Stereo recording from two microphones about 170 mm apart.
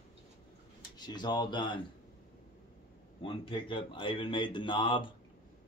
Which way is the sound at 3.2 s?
30° left (ahead or behind).